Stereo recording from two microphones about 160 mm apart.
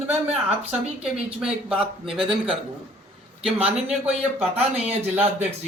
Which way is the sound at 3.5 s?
40° right (ahead or behind).